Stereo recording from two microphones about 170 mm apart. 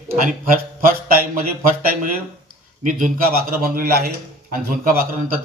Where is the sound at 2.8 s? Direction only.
50° right (ahead or behind).